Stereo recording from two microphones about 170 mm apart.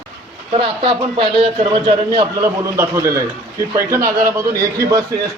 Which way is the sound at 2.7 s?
15° right (ahead or behind).